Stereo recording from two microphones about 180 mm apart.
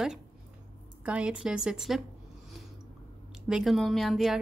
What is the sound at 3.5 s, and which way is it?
Speech, centre (ahead or behind).